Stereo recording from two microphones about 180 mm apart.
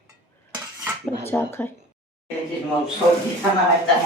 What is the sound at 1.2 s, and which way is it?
Speech, 10° left (ahead or behind).